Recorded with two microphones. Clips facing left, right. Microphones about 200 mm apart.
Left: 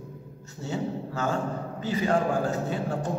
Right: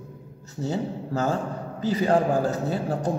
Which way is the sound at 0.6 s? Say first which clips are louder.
Right 3 dB; 35° right (ahead or behind).